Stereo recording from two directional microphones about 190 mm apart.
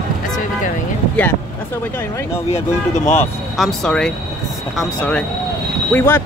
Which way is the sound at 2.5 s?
35° left (ahead or behind).